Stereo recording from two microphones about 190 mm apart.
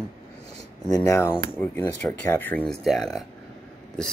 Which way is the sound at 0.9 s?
15° left (ahead or behind).